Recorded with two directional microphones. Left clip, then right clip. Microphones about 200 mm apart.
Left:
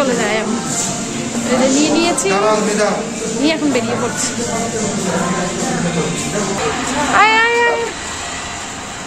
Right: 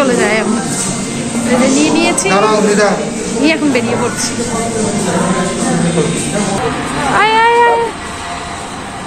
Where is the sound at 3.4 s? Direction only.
10° left (ahead or behind).